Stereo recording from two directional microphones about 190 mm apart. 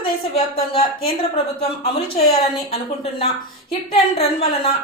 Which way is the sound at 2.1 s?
30° left (ahead or behind).